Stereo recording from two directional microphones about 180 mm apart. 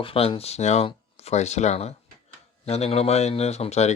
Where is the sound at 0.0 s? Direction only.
30° left (ahead or behind).